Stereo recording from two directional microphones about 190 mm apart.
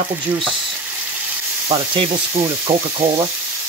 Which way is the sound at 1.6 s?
30° right (ahead or behind).